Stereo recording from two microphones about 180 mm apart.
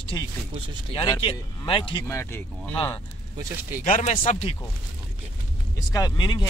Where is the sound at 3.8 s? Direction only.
35° left (ahead or behind).